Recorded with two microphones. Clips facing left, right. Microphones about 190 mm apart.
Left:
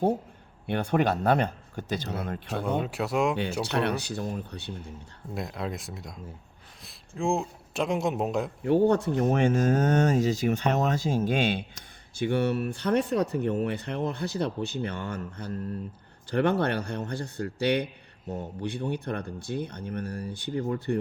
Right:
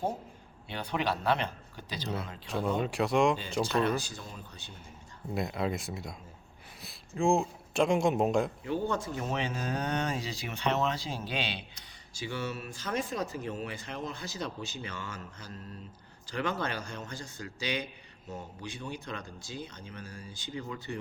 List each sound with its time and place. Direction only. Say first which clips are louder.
0.7 s speech: left 7 dB; 50° left (ahead or behind)
2.8 s a man's voice: even; centre (ahead or behind)
3.6 s speech: left 1 dB; 70° left (ahead or behind)
5.3 s a man's voice: right 1 dB; centre (ahead or behind)
7.2 s a man's voice: right 1 dB; centre (ahead or behind)
8.6 s speech: left 10 dB; 65° left (ahead or behind)